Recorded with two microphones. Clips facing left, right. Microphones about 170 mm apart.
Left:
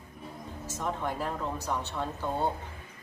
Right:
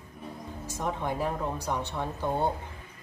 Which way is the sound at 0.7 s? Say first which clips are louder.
Right 1 dB; 15° right (ahead or behind).